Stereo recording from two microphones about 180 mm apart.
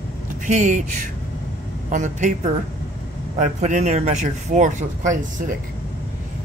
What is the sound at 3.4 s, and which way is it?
Speech, 40° right (ahead or behind).